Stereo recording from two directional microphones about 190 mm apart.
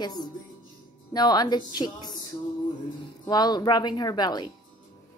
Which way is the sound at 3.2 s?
20° left (ahead or behind).